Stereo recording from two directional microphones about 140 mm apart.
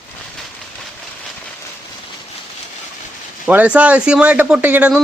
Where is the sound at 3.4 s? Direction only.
10° right (ahead or behind).